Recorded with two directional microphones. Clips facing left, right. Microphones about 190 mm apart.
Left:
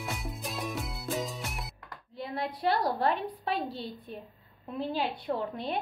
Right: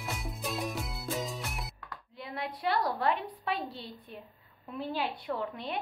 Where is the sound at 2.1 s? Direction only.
30° left (ahead or behind).